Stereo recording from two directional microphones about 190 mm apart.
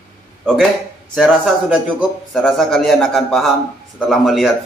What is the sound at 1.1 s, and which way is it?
A man's voice, centre (ahead or behind).